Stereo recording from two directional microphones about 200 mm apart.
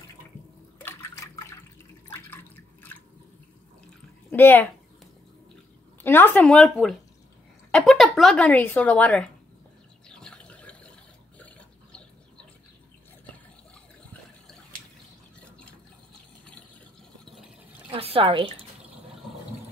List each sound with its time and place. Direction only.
0.8 s water: 15° left (ahead or behind)
2.1 s drip: 10° left (ahead or behind)
4.3 s a child's voice: 10° left (ahead or behind)
6.0 s speech: 10° left (ahead or behind)
10.0 s a sound: 5° left (ahead or behind)
11.3 s water: 5° left (ahead or behind)
17.9 s speech: 30° right (ahead or behind)